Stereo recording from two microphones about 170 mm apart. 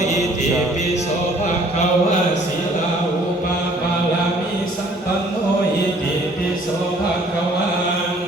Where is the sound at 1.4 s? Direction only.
40° left (ahead or behind).